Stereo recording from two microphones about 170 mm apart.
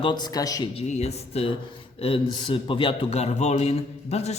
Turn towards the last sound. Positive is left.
turn(degrees=40)  # may be behind; listen again after turning